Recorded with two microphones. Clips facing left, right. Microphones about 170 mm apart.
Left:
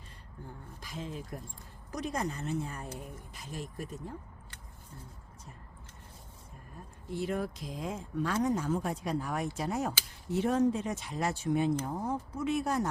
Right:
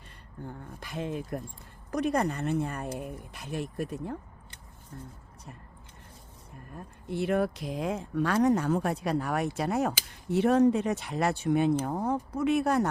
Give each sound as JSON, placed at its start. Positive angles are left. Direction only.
{"t": 0.4, "sound": "speech", "side_deg": -65}
{"t": 6.7, "sound": "speech", "side_deg": -65}